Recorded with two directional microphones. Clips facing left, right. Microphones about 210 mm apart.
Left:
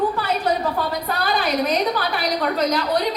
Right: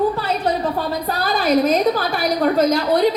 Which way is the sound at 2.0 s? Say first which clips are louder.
Right 3 dB; 45° right (ahead or behind).